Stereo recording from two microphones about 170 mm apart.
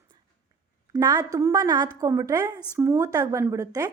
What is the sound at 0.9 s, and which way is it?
A woman's voice, 20° right (ahead or behind).